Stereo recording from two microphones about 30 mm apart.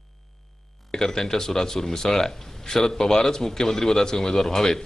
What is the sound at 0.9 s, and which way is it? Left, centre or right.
Speech, centre.